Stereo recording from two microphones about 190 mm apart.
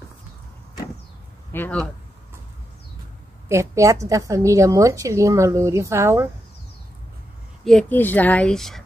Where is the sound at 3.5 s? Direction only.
15° right (ahead or behind).